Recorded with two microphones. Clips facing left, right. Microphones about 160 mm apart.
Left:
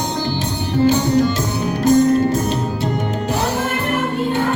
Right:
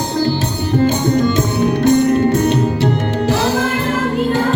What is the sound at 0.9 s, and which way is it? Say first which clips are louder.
Music: right 1 dB; 55° right (ahead or behind).